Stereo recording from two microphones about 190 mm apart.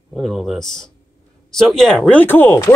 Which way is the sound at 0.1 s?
Centre (ahead or behind).